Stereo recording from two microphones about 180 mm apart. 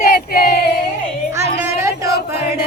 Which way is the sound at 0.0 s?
55° left (ahead or behind).